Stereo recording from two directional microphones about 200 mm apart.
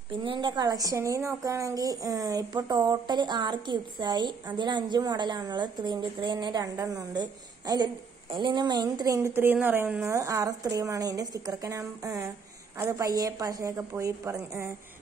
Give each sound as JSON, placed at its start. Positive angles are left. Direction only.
{"t": 0.2, "sound": "a woman's voice", "side_deg": -25}